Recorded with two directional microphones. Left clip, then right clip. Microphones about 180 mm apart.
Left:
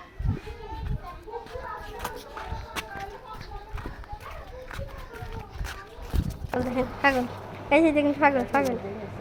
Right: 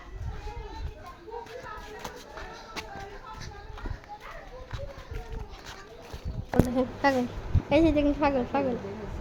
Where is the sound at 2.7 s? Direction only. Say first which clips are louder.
Left 4 dB; 40° left (ahead or behind).